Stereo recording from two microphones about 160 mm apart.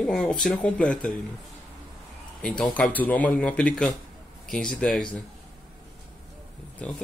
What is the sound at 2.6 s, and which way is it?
Speech, 10° left (ahead or behind).